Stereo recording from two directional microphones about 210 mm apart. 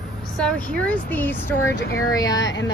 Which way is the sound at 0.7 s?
5° left (ahead or behind).